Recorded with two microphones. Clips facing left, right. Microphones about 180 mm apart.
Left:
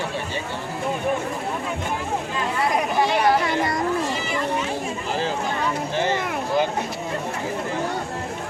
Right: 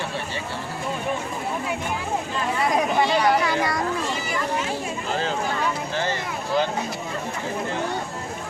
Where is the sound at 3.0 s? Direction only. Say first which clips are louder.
Left 1 dB; 25° left (ahead or behind).